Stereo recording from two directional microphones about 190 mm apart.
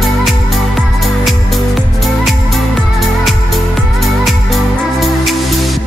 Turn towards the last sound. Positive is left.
turn(degrees=0)  # may be behind; listen again after turning